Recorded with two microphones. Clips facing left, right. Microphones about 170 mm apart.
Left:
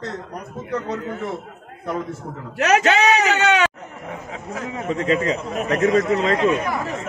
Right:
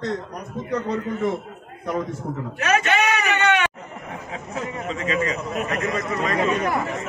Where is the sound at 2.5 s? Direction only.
85° left.